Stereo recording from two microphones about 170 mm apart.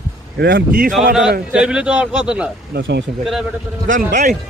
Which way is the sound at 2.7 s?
85° right.